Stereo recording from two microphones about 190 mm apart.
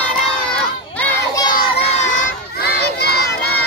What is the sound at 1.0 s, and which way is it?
Child singing, 5° left (ahead or behind).